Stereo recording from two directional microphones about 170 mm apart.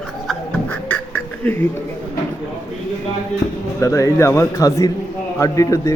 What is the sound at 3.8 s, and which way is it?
A man's voice, 15° left (ahead or behind).